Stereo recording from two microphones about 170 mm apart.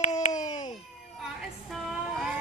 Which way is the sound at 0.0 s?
45° left (ahead or behind).